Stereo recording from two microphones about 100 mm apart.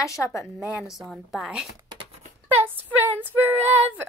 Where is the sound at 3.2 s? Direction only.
20° right (ahead or behind).